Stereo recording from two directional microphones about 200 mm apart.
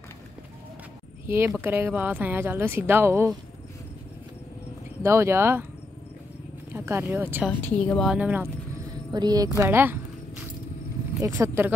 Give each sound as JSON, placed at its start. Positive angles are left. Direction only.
{"t": 1.2, "sound": "speech", "side_deg": -10}
{"t": 5.0, "sound": "speech", "side_deg": -15}
{"t": 6.7, "sound": "speech", "side_deg": -10}
{"t": 7.8, "sound": "speech", "side_deg": 5}
{"t": 9.1, "sound": "speech", "side_deg": -20}
{"t": 9.6, "sound": "a sound", "side_deg": -10}
{"t": 11.1, "sound": "speech", "side_deg": -15}